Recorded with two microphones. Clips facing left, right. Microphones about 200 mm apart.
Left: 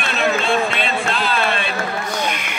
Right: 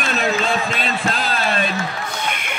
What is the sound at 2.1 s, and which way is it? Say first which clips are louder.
Music: left 3 dB; 55° right (ahead or behind).